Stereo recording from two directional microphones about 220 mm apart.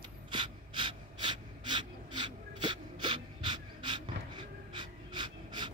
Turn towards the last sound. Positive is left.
turn(degrees=-20)  # may be behind; listen again after turning